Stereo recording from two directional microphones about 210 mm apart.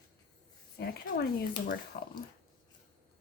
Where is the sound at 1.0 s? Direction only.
45° left (ahead or behind).